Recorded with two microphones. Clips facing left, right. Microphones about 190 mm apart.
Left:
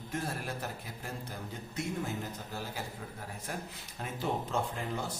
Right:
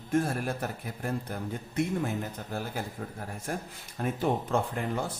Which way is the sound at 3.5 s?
50° right (ahead or behind).